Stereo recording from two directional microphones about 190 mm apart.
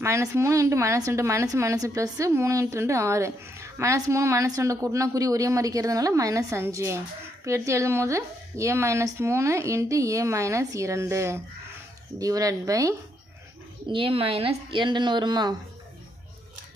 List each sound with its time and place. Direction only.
0.0 s a woman's voice: 15° right (ahead or behind)